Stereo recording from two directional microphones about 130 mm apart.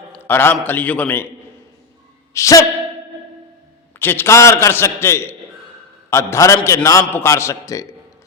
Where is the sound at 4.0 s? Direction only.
15° left (ahead or behind).